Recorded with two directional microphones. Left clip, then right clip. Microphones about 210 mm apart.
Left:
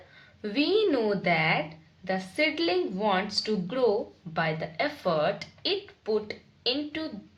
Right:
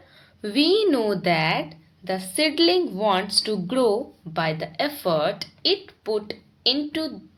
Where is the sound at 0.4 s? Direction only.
25° right (ahead or behind).